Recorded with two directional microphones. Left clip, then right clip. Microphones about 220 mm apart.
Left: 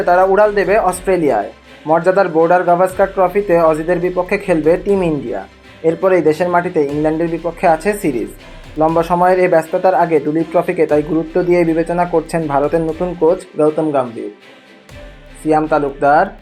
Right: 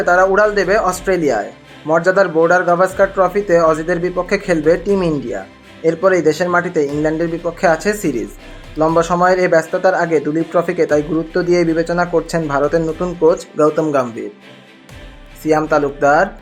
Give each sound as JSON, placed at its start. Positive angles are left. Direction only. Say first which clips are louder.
{"t": 0.0, "sound": "speech", "louder": "left 1 dB", "side_deg": -10}
{"t": 15.4, "sound": "speech", "louder": "even", "side_deg": -20}